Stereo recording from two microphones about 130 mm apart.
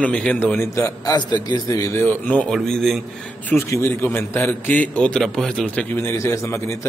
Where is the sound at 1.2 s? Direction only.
35° left (ahead or behind).